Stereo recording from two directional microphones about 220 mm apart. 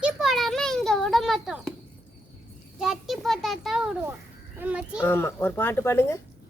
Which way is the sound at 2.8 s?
Centre (ahead or behind).